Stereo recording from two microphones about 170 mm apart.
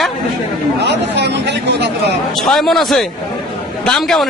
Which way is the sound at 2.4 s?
Centre (ahead or behind).